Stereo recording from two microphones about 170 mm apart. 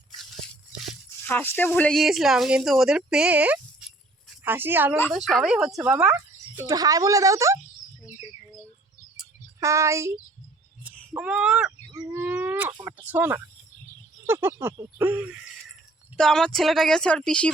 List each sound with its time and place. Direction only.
1.3 s a child's voice: 10° left (ahead or behind); by 6.1 s 10° right (ahead or behind)
6.6 s speech: 20° right (ahead or behind)
9.6 s a child's voice: 15° right (ahead or behind)
11.1 s a child's voice: 5° right (ahead or behind)
11.9 s livestock: 20° right (ahead or behind)
12.2 s chicken: 10° right (ahead or behind)
13.1 s a child's voice: 10° right (ahead or behind); by 17.5 s 5° left (ahead or behind)